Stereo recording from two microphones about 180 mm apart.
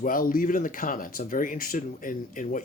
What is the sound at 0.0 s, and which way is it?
Speech, 50° left (ahead or behind).